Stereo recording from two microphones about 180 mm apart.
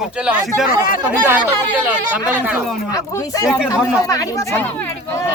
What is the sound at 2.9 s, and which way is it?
Speech, 20° left (ahead or behind).